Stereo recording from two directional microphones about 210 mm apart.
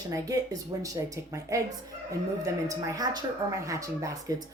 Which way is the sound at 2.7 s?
15° right (ahead or behind).